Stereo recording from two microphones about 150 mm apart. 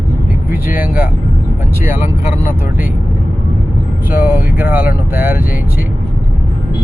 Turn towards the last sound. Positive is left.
turn(degrees=-15)  # may be behind; listen again after turning